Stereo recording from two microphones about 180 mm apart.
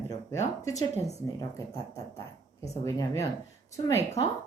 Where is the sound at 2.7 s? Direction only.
15° left (ahead or behind).